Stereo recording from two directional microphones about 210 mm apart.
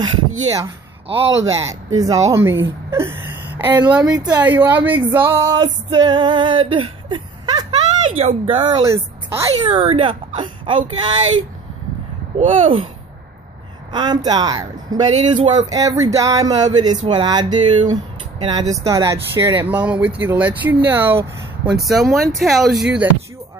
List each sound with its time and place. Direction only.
0.0 s speech: 15° right (ahead or behind)
1.0 s a man's voice: 25° right (ahead or behind)
2.0 s speech: 15° right (ahead or behind)
5.9 s speech: 20° right (ahead or behind)
9.7 s speech: 25° right (ahead or behind)
12.4 s speech: 30° right (ahead or behind)
13.9 s speech: 20° right (ahead or behind); by 23.0 s 5° right (ahead or behind)